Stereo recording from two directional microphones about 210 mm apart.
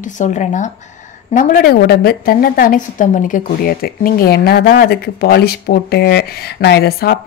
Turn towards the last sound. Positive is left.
turn(degrees=50)  # may be behind; listen again after turning